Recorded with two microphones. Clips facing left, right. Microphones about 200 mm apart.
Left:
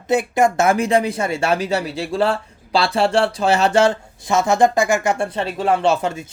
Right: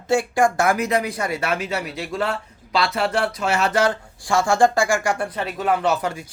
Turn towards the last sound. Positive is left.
turn(degrees=25)  # may be behind; listen again after turning